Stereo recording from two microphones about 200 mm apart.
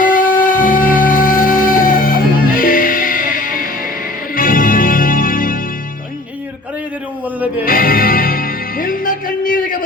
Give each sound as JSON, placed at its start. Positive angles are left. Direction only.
{"t": 0.0, "sound": "music", "side_deg": 45}
{"t": 7.6, "sound": "music", "side_deg": 45}